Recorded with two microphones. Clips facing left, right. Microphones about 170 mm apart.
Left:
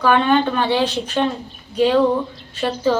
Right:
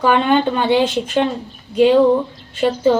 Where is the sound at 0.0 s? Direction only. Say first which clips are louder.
Right 1 dB; 20° right (ahead or behind).